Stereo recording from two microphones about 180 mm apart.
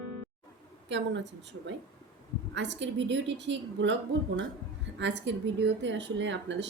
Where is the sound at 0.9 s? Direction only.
75° right (ahead or behind).